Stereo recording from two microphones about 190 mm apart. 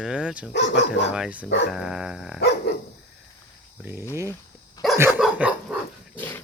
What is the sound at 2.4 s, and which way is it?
Dog, 60° left (ahead or behind).